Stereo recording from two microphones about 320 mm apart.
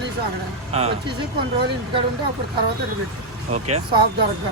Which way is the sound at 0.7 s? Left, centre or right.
Centre.